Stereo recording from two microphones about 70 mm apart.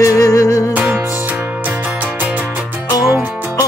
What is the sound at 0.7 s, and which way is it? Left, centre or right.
Music, right.